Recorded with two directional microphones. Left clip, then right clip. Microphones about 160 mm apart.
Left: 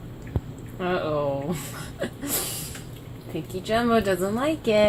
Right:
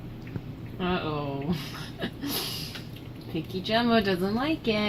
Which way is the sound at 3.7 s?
15° left (ahead or behind).